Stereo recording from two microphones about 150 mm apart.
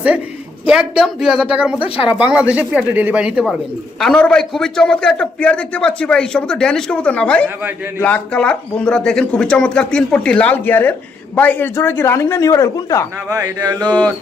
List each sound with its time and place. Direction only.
0.7 s a man's voice: 5° right (ahead or behind)
1.8 s speech: 35° left (ahead or behind)
2.1 s speech: 10° right (ahead or behind)
4.0 s a man's voice: 5° left (ahead or behind)
7.4 s speech: 15° right (ahead or behind)
8.0 s speech: 10° left (ahead or behind)
13.3 s mantra: 25° right (ahead or behind)
13.7 s speech: 10° left (ahead or behind)